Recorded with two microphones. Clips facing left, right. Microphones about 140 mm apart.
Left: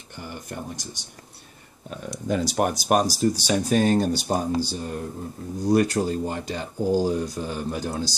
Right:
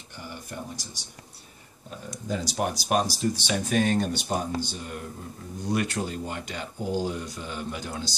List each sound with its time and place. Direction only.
2.2 s speech: 55° left (ahead or behind); by 8.1 s 40° left (ahead or behind)